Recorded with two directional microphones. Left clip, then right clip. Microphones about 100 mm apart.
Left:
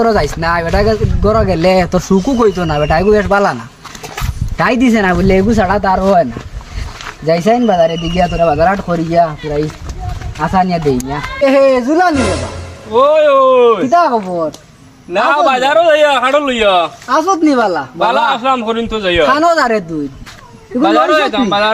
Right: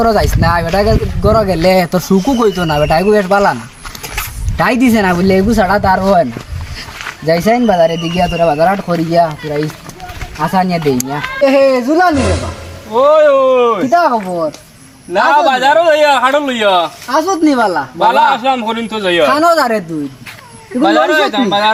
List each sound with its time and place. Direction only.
0.0 s speech: centre (ahead or behind)
4.5 s speech: 15° right (ahead or behind)
7.1 s speech: 10° right (ahead or behind)
10.5 s speech: 25° right (ahead or behind)
11.4 s speech: centre (ahead or behind)
19.2 s speech: 10° right (ahead or behind)
20.7 s speech: 5° left (ahead or behind)